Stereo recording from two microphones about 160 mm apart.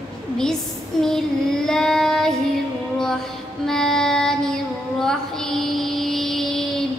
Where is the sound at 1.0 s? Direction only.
5° left (ahead or behind).